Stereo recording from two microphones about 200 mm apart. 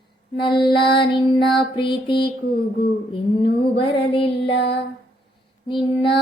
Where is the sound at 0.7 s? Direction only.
55° left (ahead or behind).